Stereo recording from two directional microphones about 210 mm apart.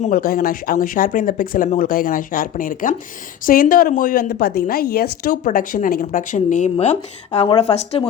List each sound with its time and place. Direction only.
0.0 s a woman's voice: 40° left (ahead or behind)